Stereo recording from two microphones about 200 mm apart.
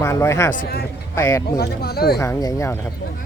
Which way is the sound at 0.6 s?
50° left (ahead or behind).